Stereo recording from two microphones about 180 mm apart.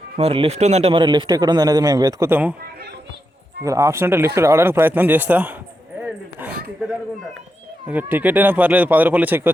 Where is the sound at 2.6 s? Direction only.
60° right (ahead or behind).